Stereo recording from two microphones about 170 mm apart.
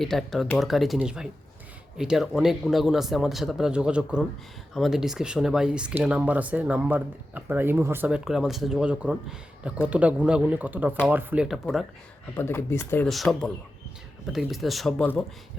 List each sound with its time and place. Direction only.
0.0 s speech: centre (ahead or behind)
12.4 s speech: 15° left (ahead or behind)
13.1 s speech: centre (ahead or behind)